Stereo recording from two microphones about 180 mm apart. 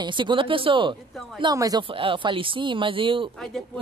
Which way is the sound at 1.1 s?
Centre (ahead or behind).